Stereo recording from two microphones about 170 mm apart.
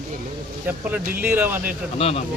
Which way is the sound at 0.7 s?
10° right (ahead or behind).